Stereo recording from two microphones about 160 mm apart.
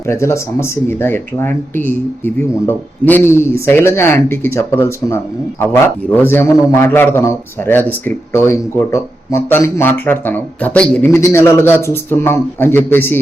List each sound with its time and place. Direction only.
0.1 s speech: 15° left (ahead or behind)